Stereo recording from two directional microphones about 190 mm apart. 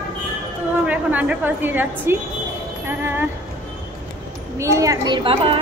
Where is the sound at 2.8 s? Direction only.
10° right (ahead or behind).